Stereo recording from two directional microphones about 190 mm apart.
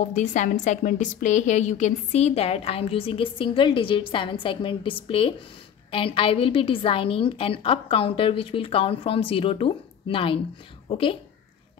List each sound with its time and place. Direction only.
0.0 s a woman's voice: 40° left (ahead or behind)